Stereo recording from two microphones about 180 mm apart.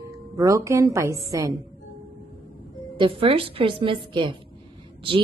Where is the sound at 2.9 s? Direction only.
25° right (ahead or behind).